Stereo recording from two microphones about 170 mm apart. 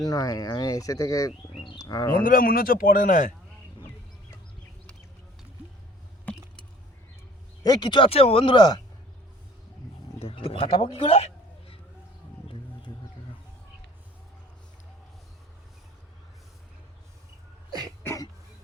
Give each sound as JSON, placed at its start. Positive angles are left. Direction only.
{"t": 0.0, "sound": "speech", "side_deg": 20}
{"t": 2.2, "sound": "a man's voice", "side_deg": 60}
{"t": 6.2, "sound": "a sound", "side_deg": 5}
{"t": 7.6, "sound": "speech", "side_deg": 25}
{"t": 10.2, "sound": "speech", "side_deg": 35}
{"t": 17.7, "sound": "throat clearing", "side_deg": -20}
{"t": 18.0, "sound": "a sound", "side_deg": 15}